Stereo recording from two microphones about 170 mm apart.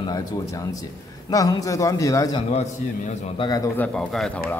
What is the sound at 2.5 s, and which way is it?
Speech, 45° left (ahead or behind).